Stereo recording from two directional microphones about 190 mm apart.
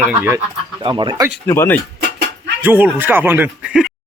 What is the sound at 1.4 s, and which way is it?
Speech, 15° left (ahead or behind).